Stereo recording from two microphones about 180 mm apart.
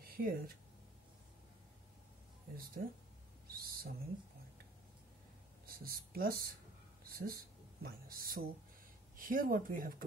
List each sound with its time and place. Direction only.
0.0 s a sound: 55° right (ahead or behind)
2.5 s speech: 55° right (ahead or behind)
3.4 s owl: 55° right (ahead or behind)
5.7 s speech: 55° right (ahead or behind)